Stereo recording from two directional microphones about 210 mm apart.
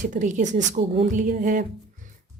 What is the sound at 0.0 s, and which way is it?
Speech, 35° right (ahead or behind).